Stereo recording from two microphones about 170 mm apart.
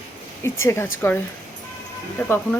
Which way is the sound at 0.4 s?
15° left (ahead or behind).